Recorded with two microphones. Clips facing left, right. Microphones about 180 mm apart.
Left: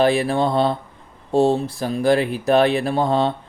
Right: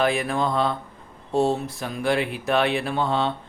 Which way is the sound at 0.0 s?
35° left (ahead or behind).